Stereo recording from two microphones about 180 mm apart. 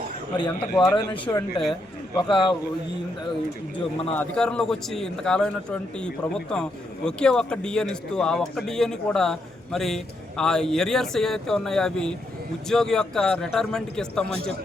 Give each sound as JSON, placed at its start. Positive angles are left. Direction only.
{"t": 0.3, "sound": "speech", "side_deg": 25}
{"t": 4.2, "sound": "a man's voice", "side_deg": 5}